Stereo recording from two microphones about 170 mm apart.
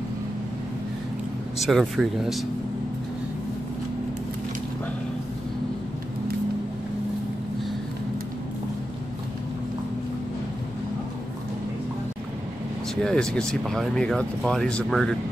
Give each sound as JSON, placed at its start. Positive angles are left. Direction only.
{"t": 1.6, "sound": "speech", "side_deg": 0}
{"t": 13.0, "sound": "speech", "side_deg": 5}